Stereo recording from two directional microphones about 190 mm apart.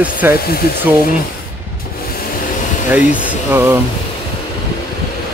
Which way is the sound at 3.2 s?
10° right (ahead or behind).